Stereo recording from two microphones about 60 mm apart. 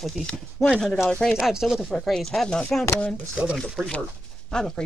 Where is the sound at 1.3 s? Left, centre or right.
Centre.